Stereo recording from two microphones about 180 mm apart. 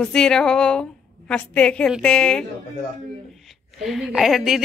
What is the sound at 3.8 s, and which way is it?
Music, centre (ahead or behind).